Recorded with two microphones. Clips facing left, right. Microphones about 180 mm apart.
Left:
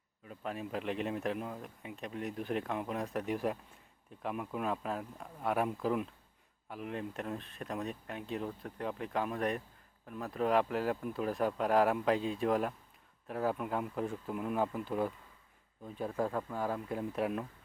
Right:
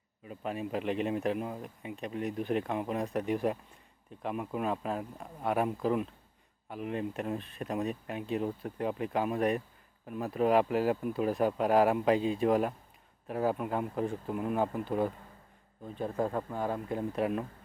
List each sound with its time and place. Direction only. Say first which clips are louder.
0.3 s speech: right 4 dB; 5° right (ahead or behind)
16.2 s speech: right 2 dB; 20° right (ahead or behind)
16.6 s speech: right 3 dB; 5° left (ahead or behind)